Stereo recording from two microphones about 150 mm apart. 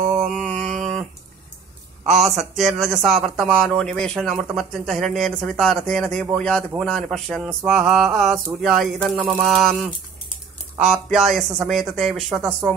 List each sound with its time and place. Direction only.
0.1 s mantra: centre (ahead or behind)
2.0 s a man's voice: 45° right (ahead or behind)
2.3 s speech: centre (ahead or behind)